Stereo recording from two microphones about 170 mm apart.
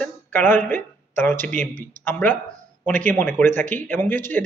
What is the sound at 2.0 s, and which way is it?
A man's voice, 10° left (ahead or behind).